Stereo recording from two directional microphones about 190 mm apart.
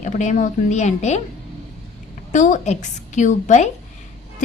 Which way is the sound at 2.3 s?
40° left (ahead or behind).